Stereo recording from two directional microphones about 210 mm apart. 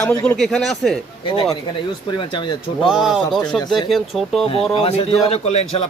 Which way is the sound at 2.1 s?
20° left (ahead or behind).